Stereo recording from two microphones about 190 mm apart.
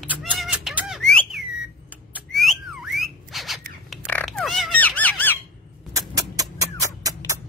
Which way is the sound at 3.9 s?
5° left (ahead or behind).